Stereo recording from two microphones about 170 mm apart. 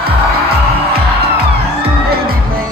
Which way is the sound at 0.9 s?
70° right (ahead or behind).